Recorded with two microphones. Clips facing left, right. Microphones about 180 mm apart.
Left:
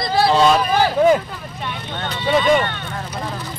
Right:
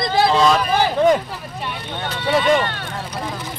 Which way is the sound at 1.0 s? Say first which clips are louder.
Left 1 dB; 5° left (ahead or behind).